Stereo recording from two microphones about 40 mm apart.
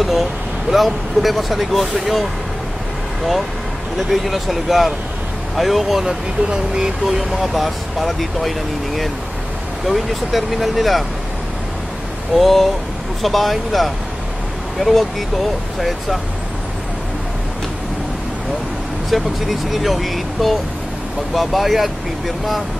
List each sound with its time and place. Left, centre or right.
0.0 s speech: centre
4.1 s speech: centre
6.0 s speech: centre
7.1 s speech: centre
12.4 s speech: centre
19.0 s speech: centre